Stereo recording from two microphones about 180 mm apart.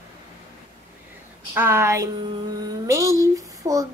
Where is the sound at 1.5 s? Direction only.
15° right (ahead or behind).